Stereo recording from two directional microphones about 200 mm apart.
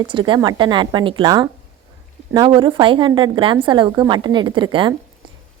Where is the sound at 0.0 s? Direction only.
25° right (ahead or behind).